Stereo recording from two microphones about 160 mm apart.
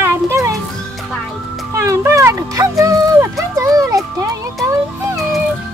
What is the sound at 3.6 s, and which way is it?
Music, 20° right (ahead or behind).